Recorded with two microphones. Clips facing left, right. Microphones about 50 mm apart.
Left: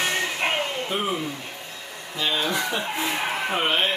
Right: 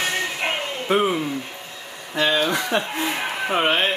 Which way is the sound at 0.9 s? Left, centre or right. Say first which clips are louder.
Right 11 dB; right.